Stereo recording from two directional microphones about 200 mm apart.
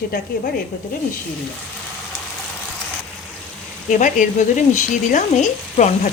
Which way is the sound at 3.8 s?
40° left (ahead or behind).